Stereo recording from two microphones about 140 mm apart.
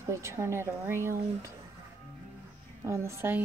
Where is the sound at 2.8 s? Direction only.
20° right (ahead or behind).